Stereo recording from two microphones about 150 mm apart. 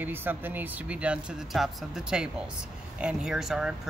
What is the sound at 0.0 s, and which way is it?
Speech, 10° right (ahead or behind).